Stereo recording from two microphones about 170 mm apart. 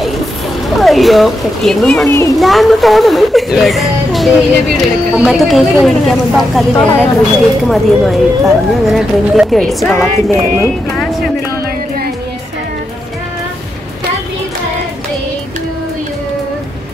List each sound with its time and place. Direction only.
0.7 s speech: centre (ahead or behind)
2.0 s a child's voice: 15° left (ahead or behind)
2.3 s speech: centre (ahead or behind)